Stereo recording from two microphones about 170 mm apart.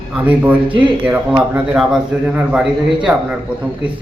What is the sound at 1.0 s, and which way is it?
A man's voice, 10° right (ahead or behind).